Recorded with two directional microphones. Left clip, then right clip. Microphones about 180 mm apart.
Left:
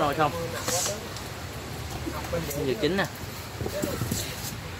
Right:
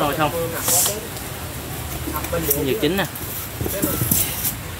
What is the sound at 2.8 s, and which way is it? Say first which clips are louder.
Speech: right 5 dB; 5° left (ahead or behind).